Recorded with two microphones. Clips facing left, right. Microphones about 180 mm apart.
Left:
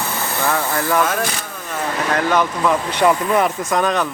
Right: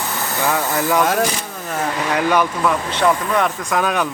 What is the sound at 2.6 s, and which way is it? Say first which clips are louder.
Speech: left 1 dB; 10° left (ahead or behind).